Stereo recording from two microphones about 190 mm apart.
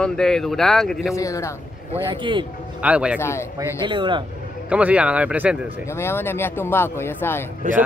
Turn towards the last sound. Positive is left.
turn(degrees=-45)  # may be behind; listen again after turning